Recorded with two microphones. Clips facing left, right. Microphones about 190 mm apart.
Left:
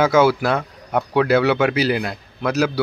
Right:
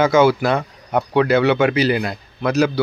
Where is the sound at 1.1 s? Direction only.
5° left (ahead or behind).